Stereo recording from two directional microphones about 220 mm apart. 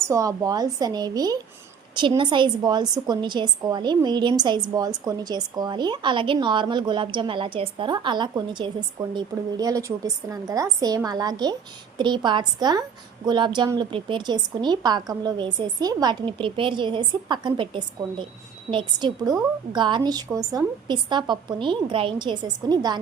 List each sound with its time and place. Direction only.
0.0 s a woman's voice: 15° right (ahead or behind)